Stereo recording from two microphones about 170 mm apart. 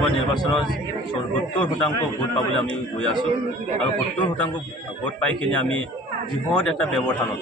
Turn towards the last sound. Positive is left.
turn(degrees=5)  # may be behind; listen again after turning